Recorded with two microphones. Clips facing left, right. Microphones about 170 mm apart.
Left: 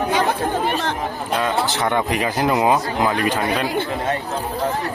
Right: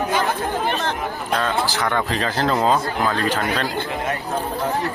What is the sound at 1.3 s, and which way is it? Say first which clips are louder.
Speech: left 1 dB; 15° left (ahead or behind).